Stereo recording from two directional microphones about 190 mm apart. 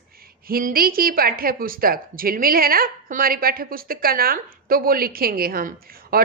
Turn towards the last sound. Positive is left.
turn(degrees=-50)  # may be behind; listen again after turning